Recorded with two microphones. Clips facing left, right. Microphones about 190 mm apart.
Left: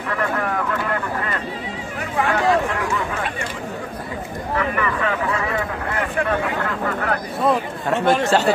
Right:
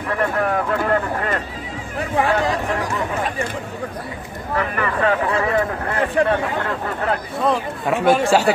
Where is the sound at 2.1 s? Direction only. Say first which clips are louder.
Left 1 dB; 35° right (ahead or behind).